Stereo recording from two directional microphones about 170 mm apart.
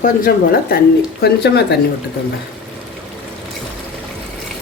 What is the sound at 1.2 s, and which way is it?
Speech, 75° left (ahead or behind).